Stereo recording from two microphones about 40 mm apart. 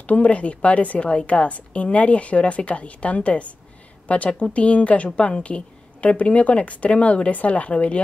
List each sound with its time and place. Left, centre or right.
0.0 s speech: left